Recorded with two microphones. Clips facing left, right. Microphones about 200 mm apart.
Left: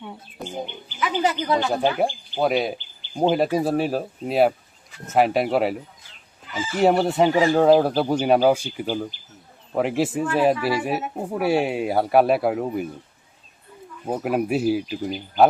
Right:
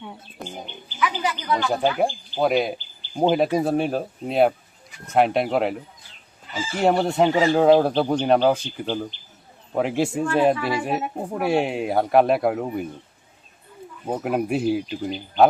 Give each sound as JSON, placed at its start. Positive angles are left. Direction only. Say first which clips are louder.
{"t": 0.0, "sound": "speech", "louder": "left 1 dB", "side_deg": 0}
{"t": 0.9, "sound": "speech", "louder": "left 3 dB", "side_deg": 25}
{"t": 2.4, "sound": "speech", "louder": "right 1 dB", "side_deg": 0}
{"t": 6.5, "sound": "fowl", "louder": "left 1 dB", "side_deg": -30}
{"t": 6.7, "sound": "speech", "louder": "left 1 dB", "side_deg": 0}
{"t": 14.1, "sound": "speech", "louder": "left 1 dB", "side_deg": 0}